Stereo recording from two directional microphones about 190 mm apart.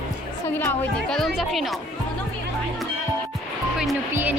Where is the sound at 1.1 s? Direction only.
Centre (ahead or behind).